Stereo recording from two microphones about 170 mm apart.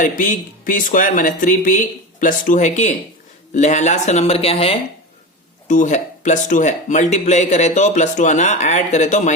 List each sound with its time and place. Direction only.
0.0 s speech: 50° left (ahead or behind)
5.6 s speech: 45° left (ahead or behind)